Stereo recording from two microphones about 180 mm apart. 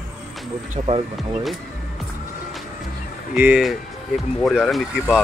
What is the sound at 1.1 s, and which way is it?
Speech, centre (ahead or behind).